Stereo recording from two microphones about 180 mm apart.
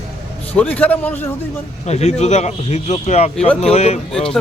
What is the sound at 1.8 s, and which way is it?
Speech, 40° left (ahead or behind).